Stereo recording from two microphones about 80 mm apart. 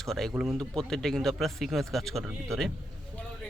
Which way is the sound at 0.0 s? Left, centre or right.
Centre.